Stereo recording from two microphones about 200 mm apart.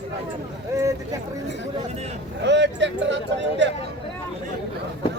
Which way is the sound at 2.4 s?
60° right (ahead or behind).